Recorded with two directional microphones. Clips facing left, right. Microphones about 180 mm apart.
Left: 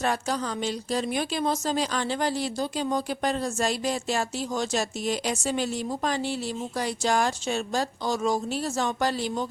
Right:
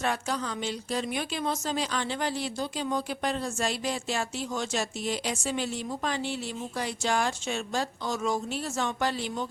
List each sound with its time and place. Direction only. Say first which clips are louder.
0.0 s speech: left 3 dB; 40° left (ahead or behind)